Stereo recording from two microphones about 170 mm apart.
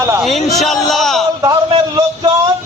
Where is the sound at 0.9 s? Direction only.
Centre (ahead or behind).